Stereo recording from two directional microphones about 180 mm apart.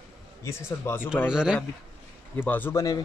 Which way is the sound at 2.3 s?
10° left (ahead or behind).